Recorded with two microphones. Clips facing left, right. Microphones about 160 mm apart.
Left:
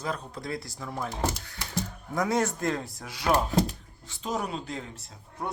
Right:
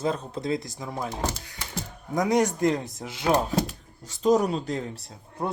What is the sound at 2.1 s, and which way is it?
Speech, 15° right (ahead or behind).